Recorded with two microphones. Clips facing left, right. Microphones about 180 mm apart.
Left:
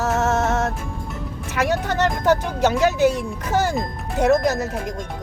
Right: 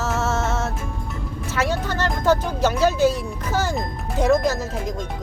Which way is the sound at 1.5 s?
15° left (ahead or behind).